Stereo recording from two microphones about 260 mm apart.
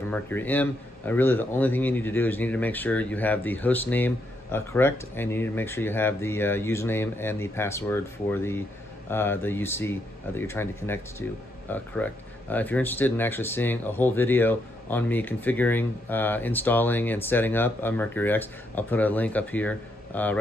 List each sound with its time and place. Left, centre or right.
0.1 s speech: centre